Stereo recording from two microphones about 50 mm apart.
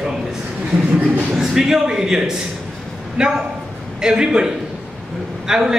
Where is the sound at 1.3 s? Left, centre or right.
Centre.